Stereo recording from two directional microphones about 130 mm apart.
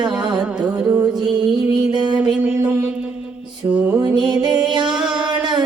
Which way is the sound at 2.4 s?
10° right (ahead or behind).